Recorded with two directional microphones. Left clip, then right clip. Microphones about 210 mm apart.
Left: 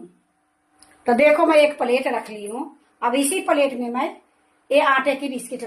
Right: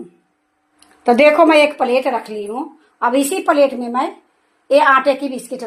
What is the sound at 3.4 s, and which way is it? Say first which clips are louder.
A woman's voice: right 7 dB; 30° right (ahead or behind).